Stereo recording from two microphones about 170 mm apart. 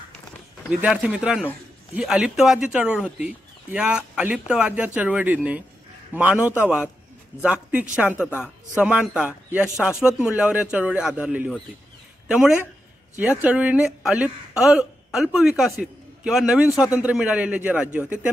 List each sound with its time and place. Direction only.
0.7 s a man's voice: 5° right (ahead or behind)
16.6 s a man's voice: 20° left (ahead or behind)
16.9 s speech: 5° right (ahead or behind)